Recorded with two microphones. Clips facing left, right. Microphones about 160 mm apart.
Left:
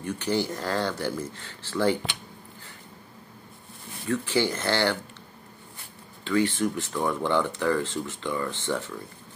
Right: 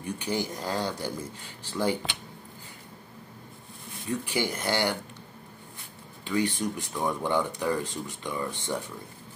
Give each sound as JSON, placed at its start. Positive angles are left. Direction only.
{"t": 0.0, "sound": "speech", "side_deg": -10}
{"t": 4.1, "sound": "speech", "side_deg": -15}
{"t": 6.2, "sound": "speech", "side_deg": -15}